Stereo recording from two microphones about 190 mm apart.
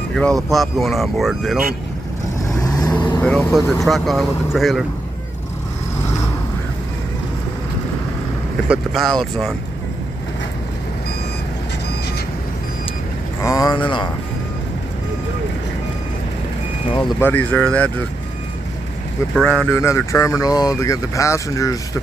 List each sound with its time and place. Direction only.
0.1 s speech: 5° left (ahead or behind)
2.4 s vehicle: 20° left (ahead or behind)
3.2 s speech: 5° left (ahead or behind)
8.6 s speech: centre (ahead or behind)
13.4 s speech: 15° left (ahead or behind)
17.2 s speech: 10° left (ahead or behind)
19.3 s speech: 5° left (ahead or behind)